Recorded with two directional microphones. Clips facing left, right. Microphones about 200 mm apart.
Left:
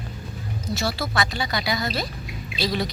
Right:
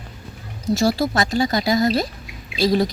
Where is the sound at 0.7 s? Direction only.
40° right (ahead or behind).